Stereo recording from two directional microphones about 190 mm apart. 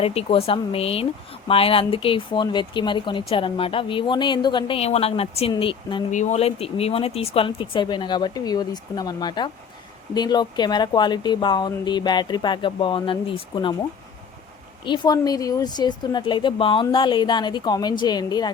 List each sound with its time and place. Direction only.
0.0 s speech: 30° left (ahead or behind)
14.8 s speech: 25° left (ahead or behind)